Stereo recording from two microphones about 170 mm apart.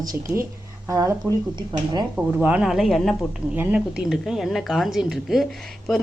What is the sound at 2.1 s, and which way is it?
Speech, 10° right (ahead or behind).